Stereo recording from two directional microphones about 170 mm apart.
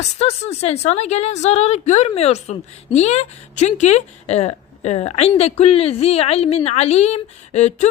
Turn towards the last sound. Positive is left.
turn(degrees=40)  # may be behind; listen again after turning